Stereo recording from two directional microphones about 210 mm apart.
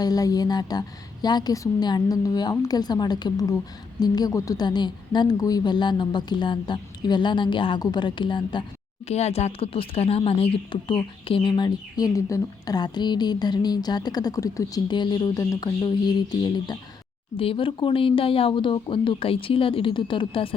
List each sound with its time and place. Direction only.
0.0 s speech: 15° left (ahead or behind)